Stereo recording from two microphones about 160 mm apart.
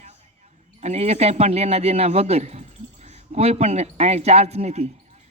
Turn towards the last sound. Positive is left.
turn(degrees=-40)  # may be behind; listen again after turning